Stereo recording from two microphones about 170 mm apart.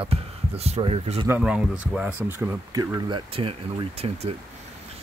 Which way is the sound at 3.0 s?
30° right (ahead or behind).